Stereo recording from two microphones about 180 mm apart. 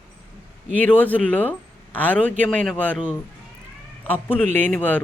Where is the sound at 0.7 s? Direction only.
10° left (ahead or behind).